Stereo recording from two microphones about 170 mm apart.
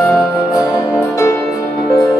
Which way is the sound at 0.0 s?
Centre (ahead or behind).